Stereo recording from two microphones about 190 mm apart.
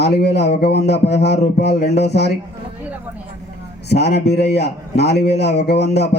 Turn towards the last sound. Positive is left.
turn(degrees=60)  # may be behind; listen again after turning